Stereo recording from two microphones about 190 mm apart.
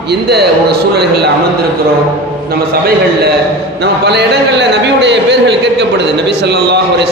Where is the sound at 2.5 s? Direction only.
50° right (ahead or behind).